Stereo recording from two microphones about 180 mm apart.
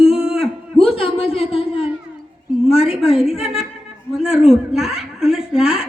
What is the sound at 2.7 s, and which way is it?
Speech, 35° left (ahead or behind).